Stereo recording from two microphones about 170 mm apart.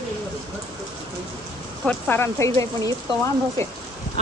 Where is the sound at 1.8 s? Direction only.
10° left (ahead or behind).